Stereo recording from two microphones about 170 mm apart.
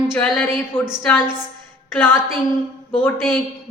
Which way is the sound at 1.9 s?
10° left (ahead or behind).